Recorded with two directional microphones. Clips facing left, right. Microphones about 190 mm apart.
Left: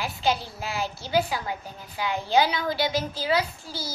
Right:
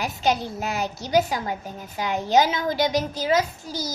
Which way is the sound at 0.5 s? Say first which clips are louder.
Right 3 dB; 45° right (ahead or behind).